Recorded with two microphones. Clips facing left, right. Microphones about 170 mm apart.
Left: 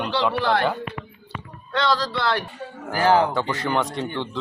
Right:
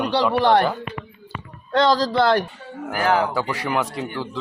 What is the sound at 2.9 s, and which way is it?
Speech, 30° left (ahead or behind).